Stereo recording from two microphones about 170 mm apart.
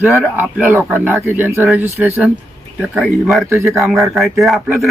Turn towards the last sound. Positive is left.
turn(degrees=0)  # may be behind; listen again after turning